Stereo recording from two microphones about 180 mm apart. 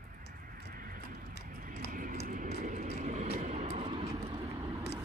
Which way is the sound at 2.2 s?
45° right (ahead or behind).